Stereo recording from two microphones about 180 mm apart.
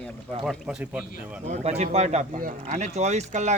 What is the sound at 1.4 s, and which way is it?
Speech, 35° right (ahead or behind).